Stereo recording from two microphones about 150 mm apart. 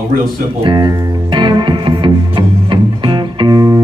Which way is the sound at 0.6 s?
30° right (ahead or behind).